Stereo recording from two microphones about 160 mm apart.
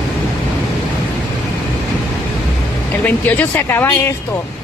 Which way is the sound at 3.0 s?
10° left (ahead or behind).